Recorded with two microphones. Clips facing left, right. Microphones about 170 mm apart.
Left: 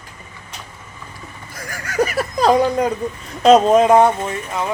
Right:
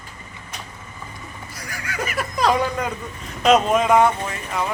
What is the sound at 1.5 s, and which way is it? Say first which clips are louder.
Speech: left 3 dB; 50° left (ahead or behind).